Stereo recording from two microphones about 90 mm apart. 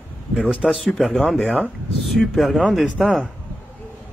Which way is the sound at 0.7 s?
Centre (ahead or behind).